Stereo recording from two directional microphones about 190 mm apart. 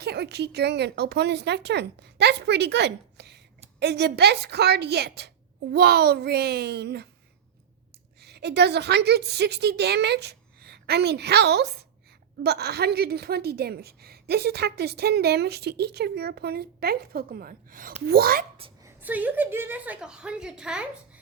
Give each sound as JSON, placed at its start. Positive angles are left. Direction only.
{"t": 0.0, "sound": "a woman's voice", "side_deg": -60}
{"t": 8.2, "sound": "a woman's voice", "side_deg": -60}
{"t": 18.8, "sound": "a woman's voice", "side_deg": -10}